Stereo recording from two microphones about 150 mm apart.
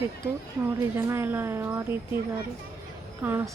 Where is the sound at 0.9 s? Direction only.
15° right (ahead or behind).